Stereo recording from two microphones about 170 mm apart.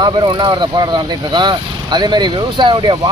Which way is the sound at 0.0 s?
25° right (ahead or behind).